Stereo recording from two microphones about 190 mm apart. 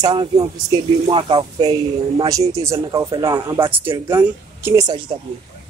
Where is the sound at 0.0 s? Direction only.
20° right (ahead or behind).